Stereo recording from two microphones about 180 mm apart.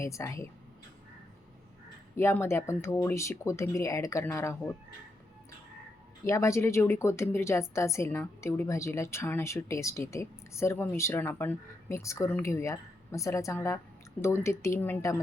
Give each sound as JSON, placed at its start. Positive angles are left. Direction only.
{"t": 0.0, "sound": "a woman's voice", "side_deg": 15}
{"t": 2.1, "sound": "a woman's voice", "side_deg": 15}
{"t": 6.2, "sound": "a woman's voice", "side_deg": 15}